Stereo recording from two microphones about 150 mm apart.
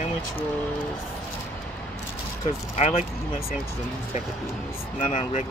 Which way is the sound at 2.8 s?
50° left (ahead or behind).